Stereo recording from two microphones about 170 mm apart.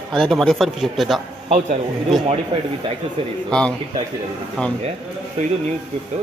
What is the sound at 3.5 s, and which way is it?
Speech, 5° left (ahead or behind).